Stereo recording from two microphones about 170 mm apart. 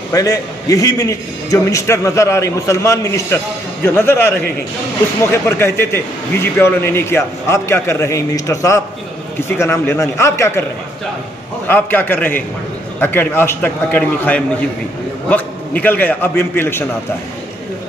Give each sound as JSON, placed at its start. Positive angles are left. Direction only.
{"t": 0.1, "sound": "a man's voice", "side_deg": 20}
{"t": 11.6, "sound": "a man's voice", "side_deg": 10}